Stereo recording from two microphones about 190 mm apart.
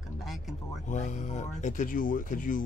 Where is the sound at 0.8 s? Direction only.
40° left (ahead or behind).